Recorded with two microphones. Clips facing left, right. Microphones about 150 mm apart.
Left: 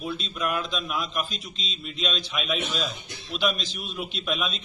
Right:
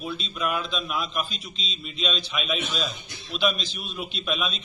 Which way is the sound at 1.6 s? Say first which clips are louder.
Even; 50° left (ahead or behind).